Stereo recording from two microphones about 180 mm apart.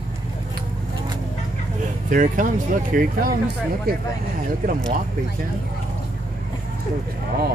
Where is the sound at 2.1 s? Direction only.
45° right (ahead or behind).